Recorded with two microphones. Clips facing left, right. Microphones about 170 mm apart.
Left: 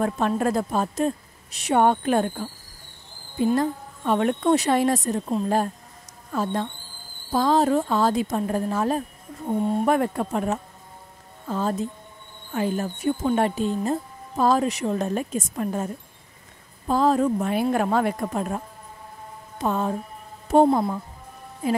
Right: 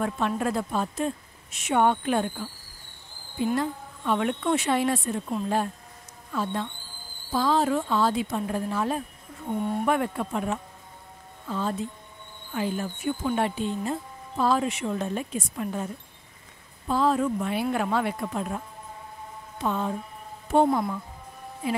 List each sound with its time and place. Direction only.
0.4 s speech: 40° left (ahead or behind)
3.5 s a woman's voice: 40° left (ahead or behind)
6.3 s speech: 45° left (ahead or behind)
9.5 s speech: 25° left (ahead or behind)
9.8 s a woman's voice: 40° left (ahead or behind)
19.6 s speech: 40° left (ahead or behind)
20.6 s speech: 30° left (ahead or behind)
21.6 s speech: 45° left (ahead or behind)